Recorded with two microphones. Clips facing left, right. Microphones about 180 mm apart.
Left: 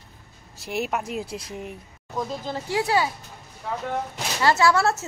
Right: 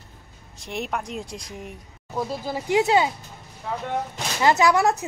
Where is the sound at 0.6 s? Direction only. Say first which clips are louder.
Left 2 dB; 5° left (ahead or behind).